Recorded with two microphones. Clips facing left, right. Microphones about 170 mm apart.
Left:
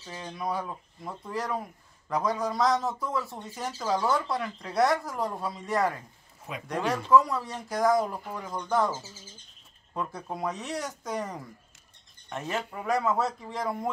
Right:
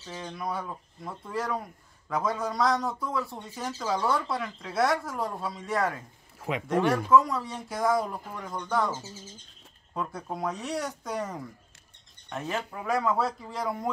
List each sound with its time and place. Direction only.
0.0 s speech: 5° left (ahead or behind)
6.4 s a sound: 90° right
7.1 s speech: centre (ahead or behind)